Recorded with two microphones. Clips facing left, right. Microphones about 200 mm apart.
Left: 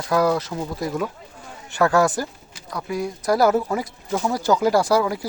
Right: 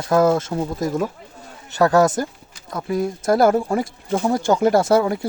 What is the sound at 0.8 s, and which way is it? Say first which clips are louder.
Speech: right 3 dB; 45° right (ahead or behind).